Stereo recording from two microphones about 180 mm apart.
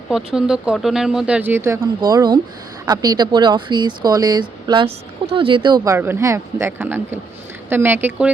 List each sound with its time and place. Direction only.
0.1 s speech: 5° right (ahead or behind)